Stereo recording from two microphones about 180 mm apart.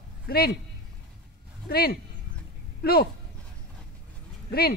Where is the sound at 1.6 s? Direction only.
60° left (ahead or behind).